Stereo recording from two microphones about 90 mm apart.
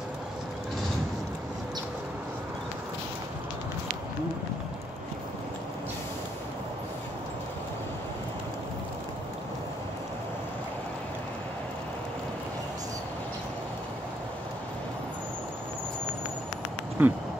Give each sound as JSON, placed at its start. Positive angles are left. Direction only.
{"t": 17.0, "sound": "speech", "side_deg": -20}